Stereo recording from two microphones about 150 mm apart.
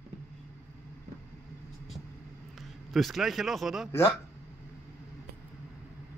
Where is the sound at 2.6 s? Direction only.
Centre (ahead or behind).